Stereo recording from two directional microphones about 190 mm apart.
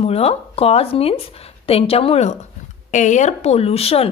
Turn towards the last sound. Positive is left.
turn(degrees=30)  # may be behind; listen again after turning